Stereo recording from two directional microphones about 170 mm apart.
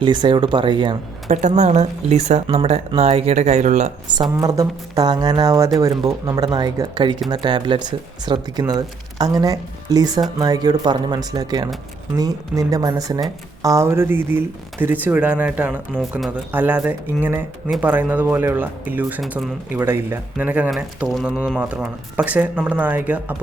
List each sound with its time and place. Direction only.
0.0 s speech: 25° right (ahead or behind)
1.3 s speech: 45° right (ahead or behind)
4.1 s speech: 25° right (ahead or behind); by 19.5 s centre (ahead or behind)
19.7 s speech: 10° right (ahead or behind)